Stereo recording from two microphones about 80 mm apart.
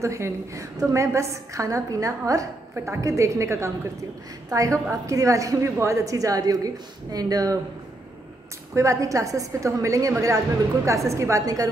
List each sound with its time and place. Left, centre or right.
0.0 s a woman's voice: right
2.7 s a woman's voice: right
8.7 s a woman's voice: right